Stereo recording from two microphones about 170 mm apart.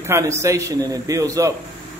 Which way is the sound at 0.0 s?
15° right (ahead or behind).